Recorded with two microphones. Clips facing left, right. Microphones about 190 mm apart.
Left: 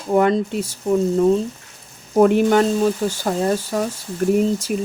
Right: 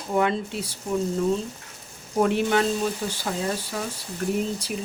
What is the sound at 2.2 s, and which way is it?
Speech, 45° left (ahead or behind).